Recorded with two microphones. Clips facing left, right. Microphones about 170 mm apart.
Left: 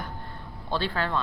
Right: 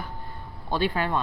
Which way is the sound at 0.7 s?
15° right (ahead or behind).